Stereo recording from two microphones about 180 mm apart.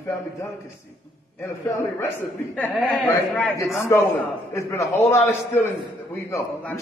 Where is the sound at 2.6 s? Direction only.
10° left (ahead or behind).